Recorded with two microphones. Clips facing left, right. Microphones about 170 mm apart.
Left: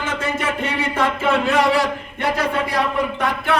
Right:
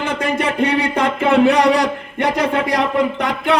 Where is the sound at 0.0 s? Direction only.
15° right (ahead or behind).